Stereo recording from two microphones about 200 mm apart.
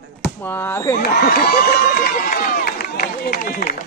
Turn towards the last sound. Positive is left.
turn(degrees=45)  # may be behind; listen again after turning